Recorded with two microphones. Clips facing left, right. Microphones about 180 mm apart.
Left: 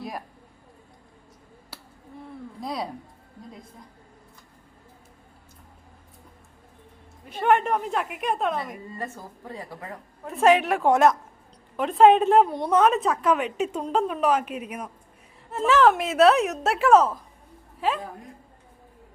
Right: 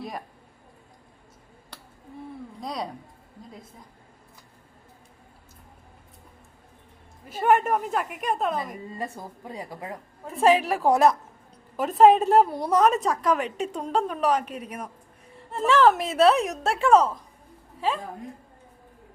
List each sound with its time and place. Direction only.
1.7 s a sound: 5° left (ahead or behind)
2.6 s a woman's voice: centre (ahead or behind)
7.3 s a woman's voice: 5° right (ahead or behind)
9.0 s a woman's voice: 15° right (ahead or behind)
10.2 s a woman's voice: centre (ahead or behind)
13.4 s a woman's voice: 35° right (ahead or behind)
13.7 s a woman's voice: centre (ahead or behind)
14.4 s a woman's voice: 35° right (ahead or behind)
15.4 s a woman's voice: centre (ahead or behind)